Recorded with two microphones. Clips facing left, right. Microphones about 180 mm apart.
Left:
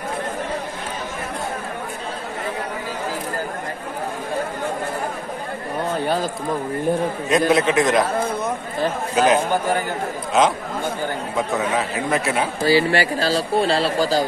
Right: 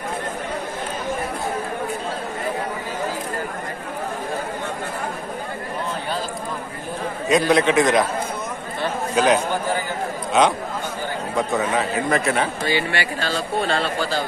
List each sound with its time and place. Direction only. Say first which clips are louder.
7.2 s a man's voice: right 1 dB; centre (ahead or behind)
9.1 s a man's voice: left 1 dB; centre (ahead or behind)
12.6 s a man's voice: left 6 dB; 35° left (ahead or behind)